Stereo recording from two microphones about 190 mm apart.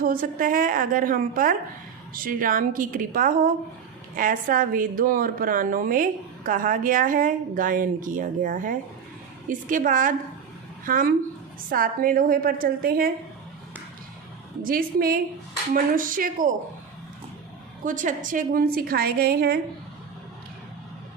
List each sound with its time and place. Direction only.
0.0 s a woman's voice: 50° right (ahead or behind)
14.6 s a woman's voice: 50° right (ahead or behind)
17.8 s a woman's voice: 45° right (ahead or behind)